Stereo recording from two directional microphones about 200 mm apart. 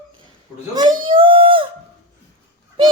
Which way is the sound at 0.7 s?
20° right (ahead or behind).